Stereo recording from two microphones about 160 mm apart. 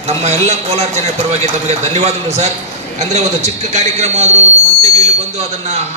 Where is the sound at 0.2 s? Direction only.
45° right (ahead or behind).